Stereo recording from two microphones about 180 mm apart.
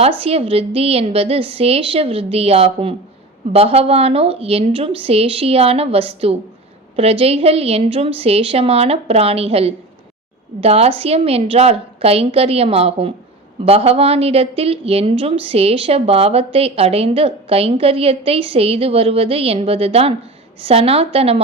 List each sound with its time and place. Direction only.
0.2 s a woman's voice: 30° right (ahead or behind)